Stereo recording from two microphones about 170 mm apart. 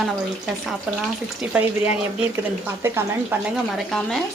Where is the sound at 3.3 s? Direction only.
10° right (ahead or behind).